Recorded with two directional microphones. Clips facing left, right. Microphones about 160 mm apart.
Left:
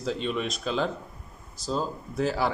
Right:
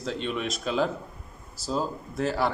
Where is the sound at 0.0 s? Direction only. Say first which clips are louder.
Left 1 dB; centre (ahead or behind).